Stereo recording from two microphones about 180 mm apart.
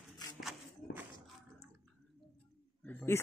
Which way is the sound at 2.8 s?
10° left (ahead or behind).